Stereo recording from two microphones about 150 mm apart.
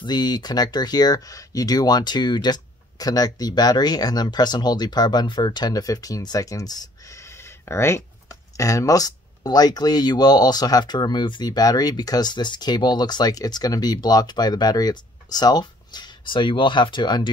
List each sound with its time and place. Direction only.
0.0 s speech: 30° left (ahead or behind)